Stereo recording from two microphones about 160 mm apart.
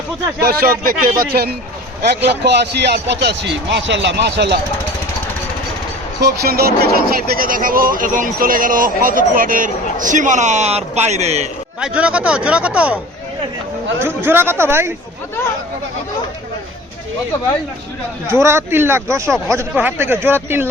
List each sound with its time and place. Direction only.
0.4 s a man's voice: 70° right (ahead or behind)
2.4 s a man's voice: 90° right
6.1 s speech: 80° right; by 11.4 s 40° right (ahead or behind)
11.8 s speech: 5° right (ahead or behind)
14.2 s speech: 15° right (ahead or behind)
18.3 s speech: 15° right (ahead or behind)